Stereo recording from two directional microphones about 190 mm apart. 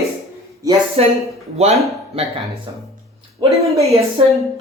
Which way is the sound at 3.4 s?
15° right (ahead or behind).